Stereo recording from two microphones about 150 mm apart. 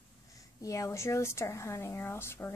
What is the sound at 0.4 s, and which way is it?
Speech, 20° left (ahead or behind).